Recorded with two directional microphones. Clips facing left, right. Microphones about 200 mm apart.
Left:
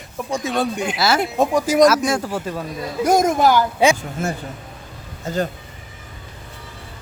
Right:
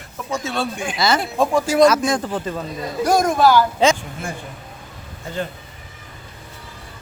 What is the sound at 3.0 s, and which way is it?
Speech, 20° left (ahead or behind).